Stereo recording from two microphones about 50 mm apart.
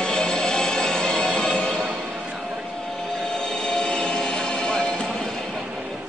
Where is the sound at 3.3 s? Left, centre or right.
Centre.